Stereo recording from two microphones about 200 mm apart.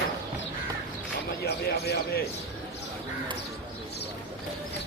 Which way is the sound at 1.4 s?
50° left (ahead or behind).